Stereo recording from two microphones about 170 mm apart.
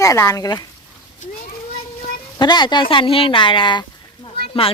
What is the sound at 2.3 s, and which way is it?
Speech, 25° left (ahead or behind).